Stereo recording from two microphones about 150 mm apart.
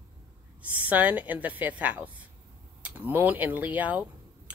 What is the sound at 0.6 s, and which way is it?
A woman's voice, 10° right (ahead or behind).